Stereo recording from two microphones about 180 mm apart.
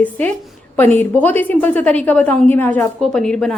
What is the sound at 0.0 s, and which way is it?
A woman's voice, 10° left (ahead or behind).